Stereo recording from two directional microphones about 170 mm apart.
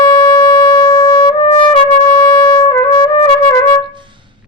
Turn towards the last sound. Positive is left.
turn(degrees=25)  # may be behind; listen again after turning